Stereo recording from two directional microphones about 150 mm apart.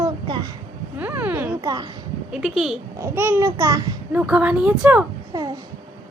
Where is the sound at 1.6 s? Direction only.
25° right (ahead or behind).